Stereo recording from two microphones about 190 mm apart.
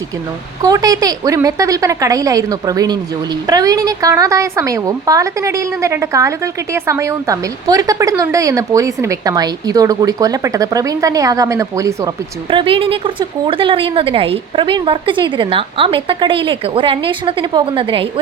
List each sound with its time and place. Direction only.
0.6 s a woman's voice: 20° right (ahead or behind)